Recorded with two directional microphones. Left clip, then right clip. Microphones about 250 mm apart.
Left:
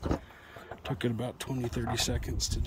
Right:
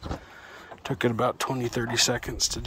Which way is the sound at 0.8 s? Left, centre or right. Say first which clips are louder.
Right 10 dB; centre.